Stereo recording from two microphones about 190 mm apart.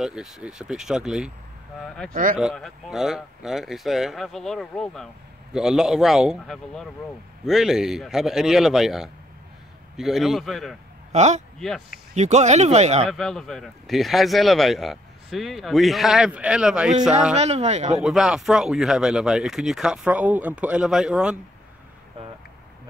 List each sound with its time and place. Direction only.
0.0 s speech: centre (ahead or behind)
11.1 s a man's voice: 35° right (ahead or behind)
13.1 s speech: centre (ahead or behind)
17.4 s speech: 35° right (ahead or behind)
18.0 s speech: 5° right (ahead or behind)